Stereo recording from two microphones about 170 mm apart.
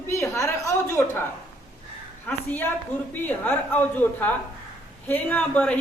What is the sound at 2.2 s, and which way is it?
A woman's voice, 10° left (ahead or behind).